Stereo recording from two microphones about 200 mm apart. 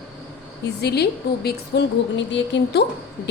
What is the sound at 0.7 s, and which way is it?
A woman's voice, 55° left (ahead or behind).